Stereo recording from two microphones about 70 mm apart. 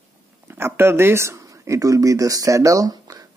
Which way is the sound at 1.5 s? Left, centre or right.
Right.